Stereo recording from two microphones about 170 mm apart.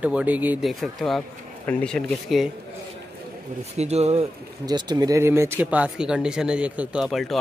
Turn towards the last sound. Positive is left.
turn(degrees=0)  # may be behind; listen again after turning